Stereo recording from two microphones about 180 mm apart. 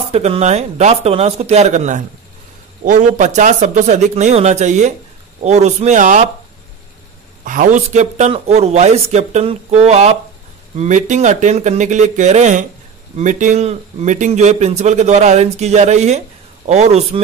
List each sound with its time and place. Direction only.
0.1 s a man's voice: 35° right (ahead or behind)
7.4 s a man's voice: 45° right (ahead or behind)